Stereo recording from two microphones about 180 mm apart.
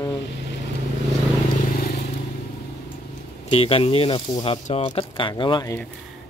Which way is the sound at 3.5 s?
30° left (ahead or behind).